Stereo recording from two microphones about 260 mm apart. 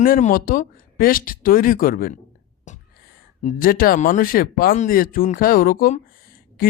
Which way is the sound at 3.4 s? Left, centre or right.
Left.